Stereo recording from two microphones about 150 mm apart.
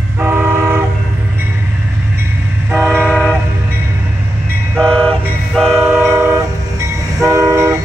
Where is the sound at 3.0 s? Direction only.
5° left (ahead or behind).